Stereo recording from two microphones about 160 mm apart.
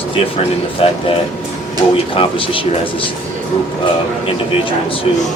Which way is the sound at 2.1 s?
35° left (ahead or behind).